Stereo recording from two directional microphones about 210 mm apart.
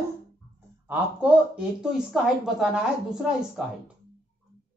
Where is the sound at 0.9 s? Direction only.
5° right (ahead or behind).